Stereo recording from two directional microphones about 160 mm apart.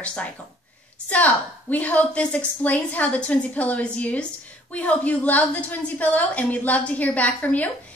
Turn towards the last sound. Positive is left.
turn(degrees=10)  # may be behind; listen again after turning